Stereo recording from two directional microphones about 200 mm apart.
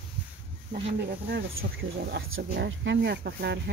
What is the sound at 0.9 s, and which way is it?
Speech, 60° right (ahead or behind).